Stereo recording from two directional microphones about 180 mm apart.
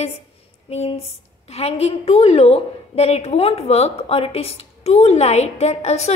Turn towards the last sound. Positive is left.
turn(degrees=40)  # may be behind; listen again after turning